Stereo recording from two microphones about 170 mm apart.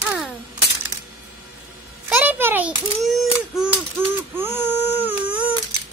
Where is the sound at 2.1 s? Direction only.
10° right (ahead or behind).